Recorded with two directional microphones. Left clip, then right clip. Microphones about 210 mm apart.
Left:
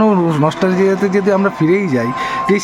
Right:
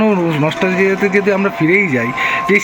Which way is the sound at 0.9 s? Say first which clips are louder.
Even; 10° left (ahead or behind).